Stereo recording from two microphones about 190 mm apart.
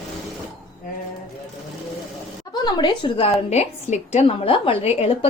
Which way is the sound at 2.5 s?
20° left (ahead or behind).